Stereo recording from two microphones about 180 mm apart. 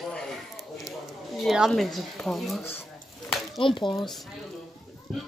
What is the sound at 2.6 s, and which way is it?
Speech, 10° left (ahead or behind).